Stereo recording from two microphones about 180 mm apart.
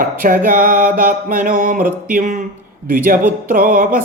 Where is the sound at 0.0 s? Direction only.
50° right (ahead or behind).